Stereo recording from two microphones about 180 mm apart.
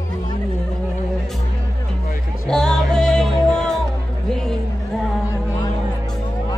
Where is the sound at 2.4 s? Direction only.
5° left (ahead or behind).